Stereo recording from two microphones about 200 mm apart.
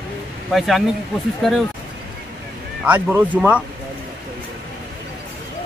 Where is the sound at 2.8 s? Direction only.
10° right (ahead or behind).